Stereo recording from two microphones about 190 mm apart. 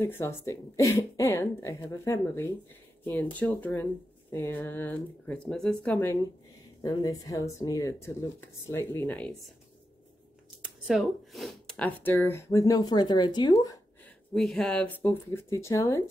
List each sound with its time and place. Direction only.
0.0 s speech: 15° left (ahead or behind)
6.8 s speech: 20° left (ahead or behind)
10.9 s speech: centre (ahead or behind); by 13.7 s 20° left (ahead or behind)
14.3 s speech: centre (ahead or behind)